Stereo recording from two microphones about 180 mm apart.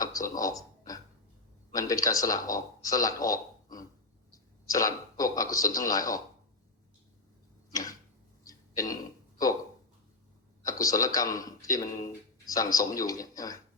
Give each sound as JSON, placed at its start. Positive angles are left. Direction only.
{"t": 0.0, "sound": "a sound", "side_deg": 20}
{"t": 1.7, "sound": "speech", "side_deg": 20}
{"t": 7.7, "sound": "tick-tock", "side_deg": 20}
{"t": 8.4, "sound": "throat clearing", "side_deg": 20}
{"t": 10.7, "sound": "speech", "side_deg": 20}